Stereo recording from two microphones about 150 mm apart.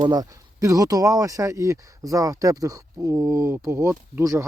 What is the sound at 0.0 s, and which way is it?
Speech, 25° right (ahead or behind).